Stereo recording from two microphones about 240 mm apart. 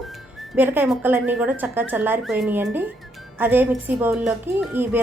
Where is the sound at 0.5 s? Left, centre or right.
Centre.